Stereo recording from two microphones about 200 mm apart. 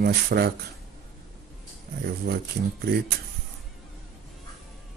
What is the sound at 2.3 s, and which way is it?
Speech, 55° right (ahead or behind).